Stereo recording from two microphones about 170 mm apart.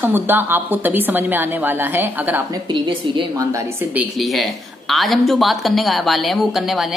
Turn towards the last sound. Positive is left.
turn(degrees=0)  # may be behind; listen again after turning